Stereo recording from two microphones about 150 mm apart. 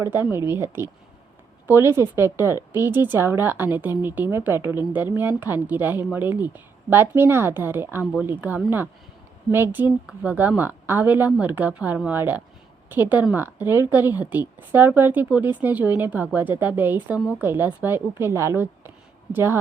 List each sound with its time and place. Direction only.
0.0 s a woman's voice: 15° right (ahead or behind)
8.0 s speech: centre (ahead or behind)
8.3 s a woman's voice: 10° right (ahead or behind)